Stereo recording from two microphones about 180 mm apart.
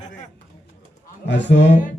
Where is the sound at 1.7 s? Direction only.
45° left (ahead or behind).